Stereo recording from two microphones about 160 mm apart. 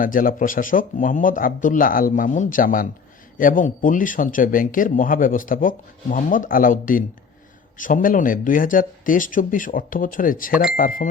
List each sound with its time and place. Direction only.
0.0 s speech: 60° left (ahead or behind)